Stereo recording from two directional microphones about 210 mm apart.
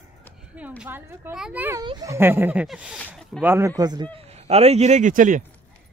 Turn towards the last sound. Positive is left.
turn(degrees=-35)  # may be behind; listen again after turning